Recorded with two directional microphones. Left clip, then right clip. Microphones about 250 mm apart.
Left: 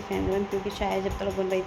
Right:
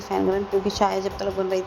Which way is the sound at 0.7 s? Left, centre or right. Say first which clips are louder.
Right 6 dB; right.